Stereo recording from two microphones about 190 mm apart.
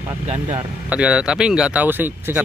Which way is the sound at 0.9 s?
5° right (ahead or behind).